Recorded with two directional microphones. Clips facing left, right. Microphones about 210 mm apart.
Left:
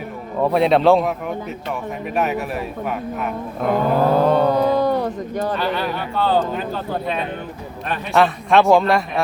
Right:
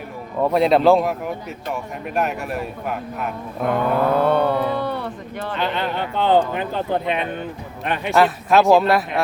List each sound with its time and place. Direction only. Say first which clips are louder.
0.4 s speech: even; centre (ahead or behind)
2.1 s speech: left 1 dB; centre (ahead or behind)
3.9 s speech: left 2 dB; 35° left (ahead or behind)
5.5 s speech: left 1 dB; 20° right (ahead or behind)
8.1 s speech: left 1 dB; centre (ahead or behind)